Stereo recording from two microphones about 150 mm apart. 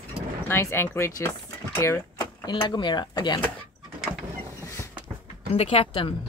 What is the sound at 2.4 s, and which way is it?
Speech, 30° left (ahead or behind).